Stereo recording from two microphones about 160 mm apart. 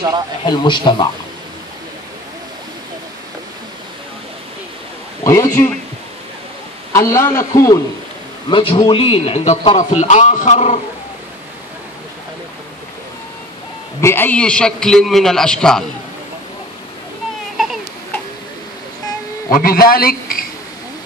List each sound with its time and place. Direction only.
0.5 s a man's voice: 30° left (ahead or behind)
5.2 s a man's voice: 20° left (ahead or behind)
6.9 s a man's voice: 20° left (ahead or behind)
8.5 s a man's voice: 30° left (ahead or behind)
14.0 s a man's voice: 10° left (ahead or behind)
19.5 s a man's voice: 65° left (ahead or behind)